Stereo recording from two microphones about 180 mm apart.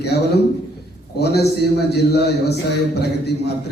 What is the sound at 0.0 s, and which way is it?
A man's voice, 65° left (ahead or behind).